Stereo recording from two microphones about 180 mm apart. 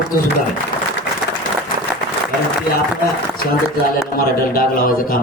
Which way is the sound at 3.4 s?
55° left (ahead or behind).